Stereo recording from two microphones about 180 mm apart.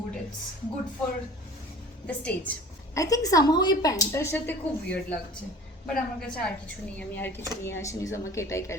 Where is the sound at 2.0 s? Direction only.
5° left (ahead or behind).